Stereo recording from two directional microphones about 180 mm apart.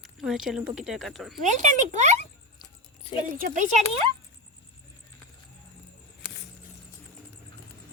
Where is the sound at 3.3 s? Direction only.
45° right (ahead or behind).